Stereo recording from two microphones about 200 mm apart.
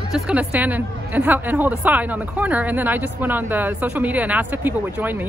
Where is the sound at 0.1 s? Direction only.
5° right (ahead or behind).